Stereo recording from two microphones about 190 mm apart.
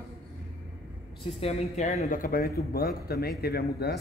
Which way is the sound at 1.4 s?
35° left (ahead or behind).